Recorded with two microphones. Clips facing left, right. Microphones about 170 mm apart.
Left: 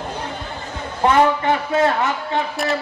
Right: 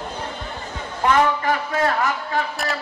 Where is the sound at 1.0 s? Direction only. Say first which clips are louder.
Left 3 dB; 30° left (ahead or behind).